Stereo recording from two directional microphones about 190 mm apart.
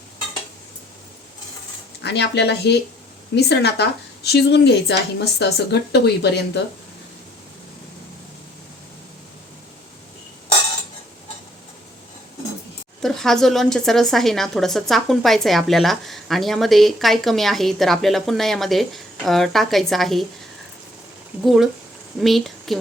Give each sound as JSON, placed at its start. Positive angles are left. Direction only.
{"t": 2.0, "sound": "speech", "side_deg": 65}
{"t": 13.0, "sound": "speech", "side_deg": 0}
{"t": 21.4, "sound": "a woman's voice", "side_deg": 0}